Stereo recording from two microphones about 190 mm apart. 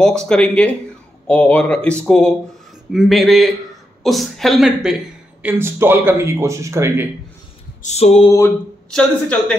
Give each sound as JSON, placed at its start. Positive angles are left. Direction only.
{"t": 0.2, "sound": "a woman's voice", "side_deg": 5}
{"t": 7.8, "sound": "a sound", "side_deg": 35}
{"t": 8.3, "sound": "speech", "side_deg": 10}